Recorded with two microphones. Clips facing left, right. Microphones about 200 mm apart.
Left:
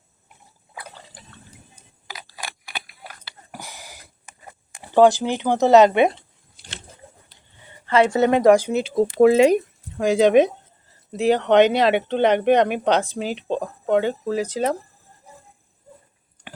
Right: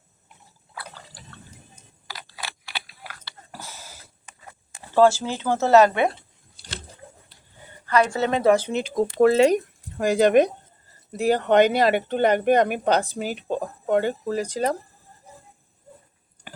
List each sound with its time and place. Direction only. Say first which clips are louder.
2.0 s a sound: left 1 dB; 15° left (ahead or behind)
4.7 s speech: left 3 dB; 15° left (ahead or behind)
7.9 s speech: left 4 dB; 25° left (ahead or behind)
10.0 s speech: left 2 dB; centre (ahead or behind)